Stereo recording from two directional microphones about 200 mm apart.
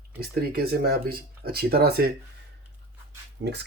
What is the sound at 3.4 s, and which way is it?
Speech, 60° right (ahead or behind).